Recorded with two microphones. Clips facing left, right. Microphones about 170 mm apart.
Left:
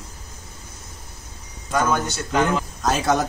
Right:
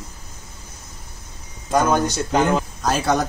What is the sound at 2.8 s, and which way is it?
Speech, centre (ahead or behind).